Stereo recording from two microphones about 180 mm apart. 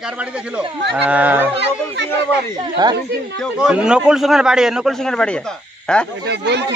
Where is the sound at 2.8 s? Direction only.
25° right (ahead or behind).